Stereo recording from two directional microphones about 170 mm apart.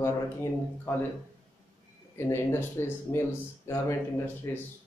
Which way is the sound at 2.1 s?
15° left (ahead or behind).